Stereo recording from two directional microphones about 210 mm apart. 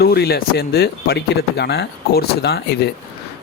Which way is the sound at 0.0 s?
50° left (ahead or behind).